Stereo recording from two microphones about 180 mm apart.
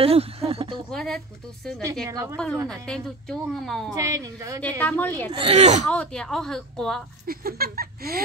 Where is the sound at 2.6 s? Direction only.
5° left (ahead or behind).